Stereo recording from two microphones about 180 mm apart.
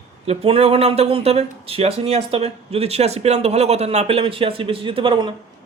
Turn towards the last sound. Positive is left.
turn(degrees=-25)  # may be behind; listen again after turning